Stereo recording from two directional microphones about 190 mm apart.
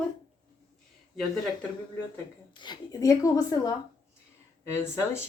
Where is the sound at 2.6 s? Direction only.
20° left (ahead or behind).